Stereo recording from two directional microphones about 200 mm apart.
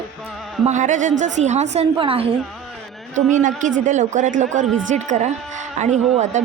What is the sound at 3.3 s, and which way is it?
A man's voice, 40° right (ahead or behind).